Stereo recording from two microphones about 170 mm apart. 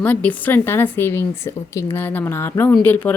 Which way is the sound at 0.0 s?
10° left (ahead or behind).